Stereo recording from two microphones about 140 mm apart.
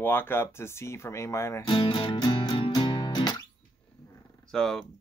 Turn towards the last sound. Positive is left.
turn(degrees=5)  # may be behind; listen again after turning